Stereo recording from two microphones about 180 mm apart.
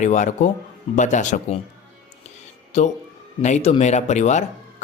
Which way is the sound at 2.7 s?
40° left (ahead or behind).